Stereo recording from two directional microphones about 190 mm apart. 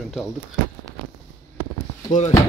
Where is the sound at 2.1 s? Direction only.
40° left (ahead or behind).